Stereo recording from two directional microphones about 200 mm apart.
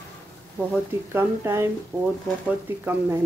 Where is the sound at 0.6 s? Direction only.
10° right (ahead or behind).